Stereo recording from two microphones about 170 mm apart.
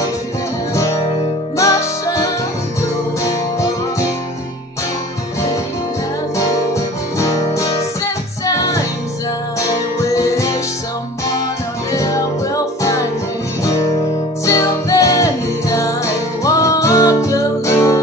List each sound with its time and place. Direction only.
1.6 s music: 20° left (ahead or behind)
6.3 s music: 15° left (ahead or behind)
11.9 s music: 20° left (ahead or behind)
14.4 s music: 20° left (ahead or behind)